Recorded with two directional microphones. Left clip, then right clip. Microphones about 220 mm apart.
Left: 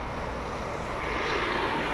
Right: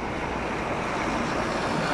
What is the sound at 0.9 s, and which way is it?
Vehicle, 50° right (ahead or behind).